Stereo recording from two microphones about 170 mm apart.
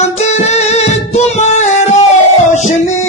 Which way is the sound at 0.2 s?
40° left (ahead or behind).